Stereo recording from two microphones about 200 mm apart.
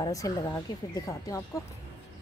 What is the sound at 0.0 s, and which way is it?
Speech, 15° left (ahead or behind).